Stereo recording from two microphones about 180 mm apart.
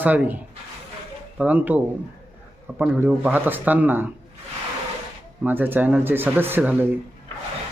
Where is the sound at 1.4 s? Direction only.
10° right (ahead or behind).